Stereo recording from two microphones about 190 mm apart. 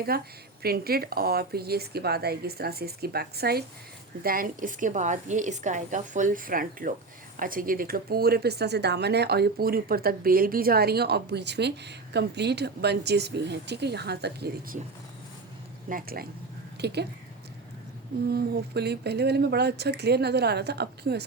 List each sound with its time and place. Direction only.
0.1 s a woman's voice: 55° right (ahead or behind)
15.9 s a woman's voice: 50° right (ahead or behind)
16.8 s speech: 60° right (ahead or behind)
18.3 s speech: 55° right (ahead or behind)